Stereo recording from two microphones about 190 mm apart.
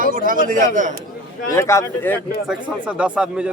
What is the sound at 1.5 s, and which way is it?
Speech, 15° left (ahead or behind).